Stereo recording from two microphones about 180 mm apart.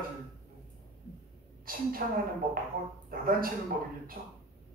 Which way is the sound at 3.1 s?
55° right (ahead or behind).